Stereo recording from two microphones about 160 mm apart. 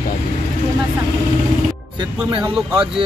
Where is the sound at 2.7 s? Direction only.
5° right (ahead or behind).